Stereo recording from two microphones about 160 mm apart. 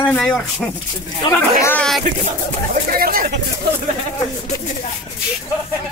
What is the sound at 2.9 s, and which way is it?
Speech, 65° right (ahead or behind).